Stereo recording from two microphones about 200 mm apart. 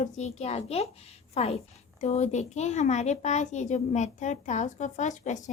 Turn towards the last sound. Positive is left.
turn(degrees=40)  # may be behind; listen again after turning